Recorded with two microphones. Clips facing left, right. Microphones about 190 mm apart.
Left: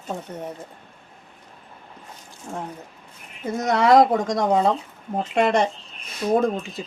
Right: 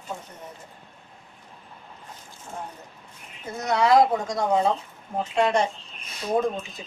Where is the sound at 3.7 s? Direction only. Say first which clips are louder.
Left 3 dB; 55° left (ahead or behind).